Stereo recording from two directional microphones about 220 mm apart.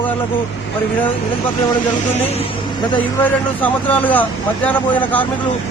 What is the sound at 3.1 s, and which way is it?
Speech, 10° left (ahead or behind).